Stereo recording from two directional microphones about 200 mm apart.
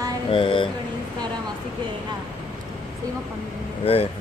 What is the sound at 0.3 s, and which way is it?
Speech, 25° left (ahead or behind).